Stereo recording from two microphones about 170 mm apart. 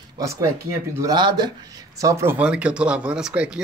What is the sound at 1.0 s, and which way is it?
Speech, 25° right (ahead or behind).